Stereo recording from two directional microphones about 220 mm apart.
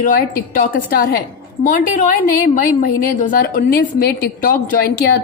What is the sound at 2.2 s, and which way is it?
A woman's voice, 40° left (ahead or behind).